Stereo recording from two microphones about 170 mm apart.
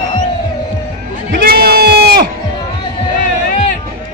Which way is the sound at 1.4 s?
65° right (ahead or behind).